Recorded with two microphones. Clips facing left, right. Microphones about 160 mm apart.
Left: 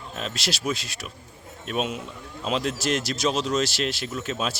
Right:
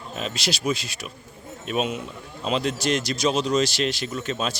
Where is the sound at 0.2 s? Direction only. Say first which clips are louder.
Right 2 dB; centre (ahead or behind).